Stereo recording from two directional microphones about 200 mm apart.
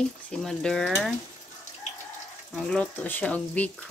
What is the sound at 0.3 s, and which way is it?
Speech, 5° left (ahead or behind).